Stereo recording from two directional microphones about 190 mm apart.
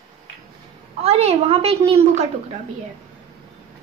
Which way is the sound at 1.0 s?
35° right (ahead or behind).